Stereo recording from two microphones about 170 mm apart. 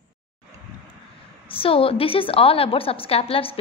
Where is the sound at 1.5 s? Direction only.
35° left (ahead or behind).